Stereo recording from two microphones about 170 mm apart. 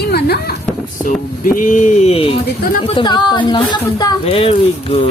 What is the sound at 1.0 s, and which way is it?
Speech, 50° left (ahead or behind).